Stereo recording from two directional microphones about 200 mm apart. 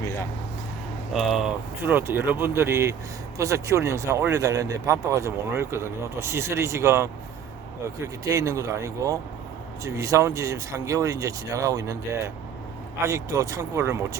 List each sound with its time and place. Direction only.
1.1 s speech: centre (ahead or behind)
13.0 s speech: 15° right (ahead or behind)